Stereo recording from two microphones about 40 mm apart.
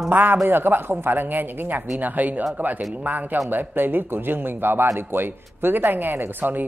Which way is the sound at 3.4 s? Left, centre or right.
Right.